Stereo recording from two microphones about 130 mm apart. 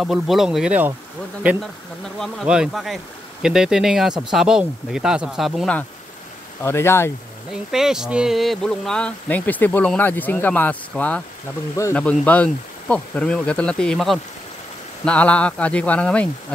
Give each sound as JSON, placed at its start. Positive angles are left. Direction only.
{"t": 0.0, "sound": "speech", "side_deg": 0}
{"t": 2.1, "sound": "speech", "side_deg": 5}
{"t": 6.6, "sound": "speech", "side_deg": 20}
{"t": 7.7, "sound": "speech", "side_deg": -5}
{"t": 11.7, "sound": "speech", "side_deg": 20}
{"t": 12.0, "sound": "speech", "side_deg": 10}